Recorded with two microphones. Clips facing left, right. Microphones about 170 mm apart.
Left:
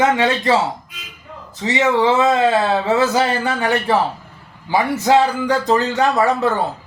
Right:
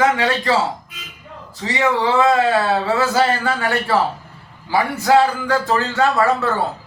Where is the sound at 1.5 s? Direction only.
20° left (ahead or behind).